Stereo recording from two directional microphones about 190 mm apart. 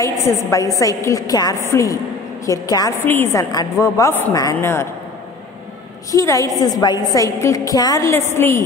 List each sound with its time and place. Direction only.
0.0 s a woman's voice: 15° left (ahead or behind)
6.1 s a woman's voice: 15° left (ahead or behind)